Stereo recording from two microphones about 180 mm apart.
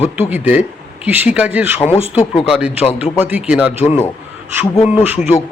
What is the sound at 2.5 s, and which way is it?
Speech, 5° right (ahead or behind).